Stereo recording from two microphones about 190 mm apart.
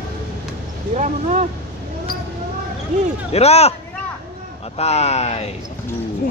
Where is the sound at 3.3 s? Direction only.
35° left (ahead or behind).